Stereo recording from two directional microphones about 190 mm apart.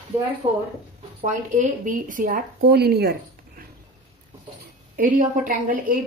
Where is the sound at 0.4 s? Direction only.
25° right (ahead or behind).